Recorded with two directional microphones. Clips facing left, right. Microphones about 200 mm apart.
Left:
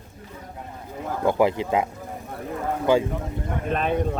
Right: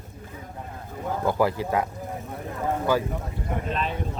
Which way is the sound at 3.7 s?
55° left (ahead or behind).